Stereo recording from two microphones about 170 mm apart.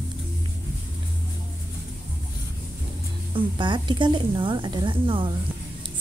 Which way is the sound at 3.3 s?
25° right (ahead or behind).